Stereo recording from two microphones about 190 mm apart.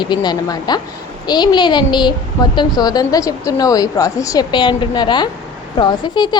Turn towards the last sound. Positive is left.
turn(degrees=20)  # may be behind; listen again after turning